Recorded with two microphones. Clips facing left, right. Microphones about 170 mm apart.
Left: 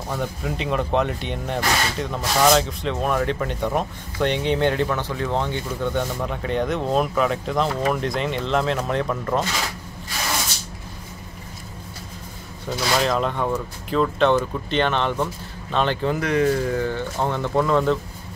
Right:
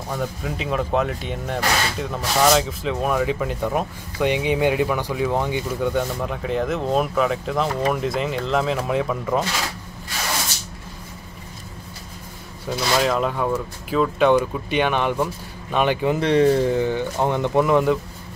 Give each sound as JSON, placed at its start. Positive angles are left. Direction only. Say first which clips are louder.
{"t": 0.1, "sound": "speech", "louder": "even", "side_deg": 0}
{"t": 12.6, "sound": "speech", "louder": "right 1 dB", "side_deg": -5}
{"t": 16.2, "sound": "speech", "louder": "right 5 dB", "side_deg": -30}